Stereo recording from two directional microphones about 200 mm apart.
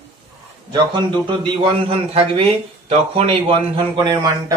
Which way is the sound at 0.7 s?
25° right (ahead or behind).